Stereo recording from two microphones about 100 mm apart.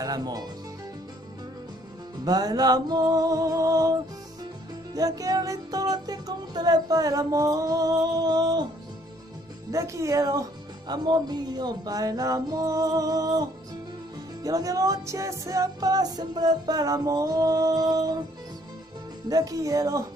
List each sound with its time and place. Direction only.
0.0 s speech: 40° right (ahead or behind)
2.2 s speech: 40° right (ahead or behind)
9.7 s speech: 30° right (ahead or behind)
19.2 s speech: 40° right (ahead or behind)